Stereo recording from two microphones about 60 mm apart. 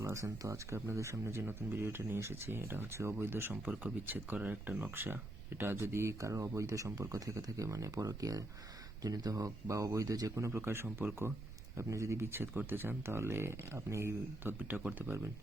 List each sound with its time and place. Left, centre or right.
0.0 s speech: right
3.5 s speech: right
11.8 s speech: right
14.7 s speech: right